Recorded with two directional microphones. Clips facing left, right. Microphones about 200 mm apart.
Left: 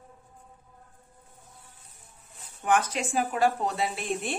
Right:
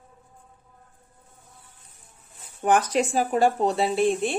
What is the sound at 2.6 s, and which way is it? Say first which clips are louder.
A woman's voice: right 5 dB; 35° right (ahead or behind).